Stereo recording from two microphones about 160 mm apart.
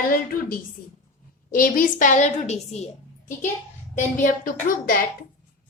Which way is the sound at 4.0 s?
55° left (ahead or behind).